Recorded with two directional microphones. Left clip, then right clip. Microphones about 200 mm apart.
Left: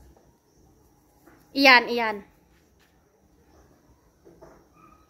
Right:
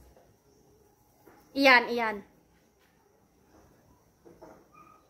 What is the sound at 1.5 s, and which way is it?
Speech, 20° left (ahead or behind).